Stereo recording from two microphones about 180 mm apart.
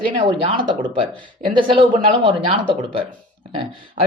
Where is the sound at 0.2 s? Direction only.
30° right (ahead or behind).